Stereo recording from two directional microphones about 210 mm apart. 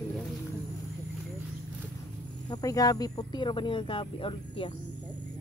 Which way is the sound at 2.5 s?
15° left (ahead or behind).